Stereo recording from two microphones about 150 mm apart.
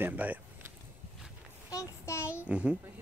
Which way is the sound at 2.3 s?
10° right (ahead or behind).